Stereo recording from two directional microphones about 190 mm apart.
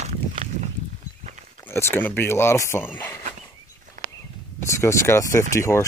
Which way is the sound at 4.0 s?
40° right (ahead or behind).